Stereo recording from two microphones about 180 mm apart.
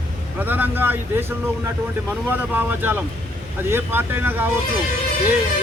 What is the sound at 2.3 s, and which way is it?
Speech, 10° right (ahead or behind).